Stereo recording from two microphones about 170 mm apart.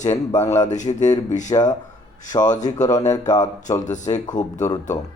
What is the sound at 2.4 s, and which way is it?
Speech, 45° left (ahead or behind).